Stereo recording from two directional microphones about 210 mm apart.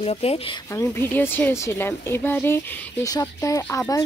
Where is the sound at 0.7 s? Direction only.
10° left (ahead or behind).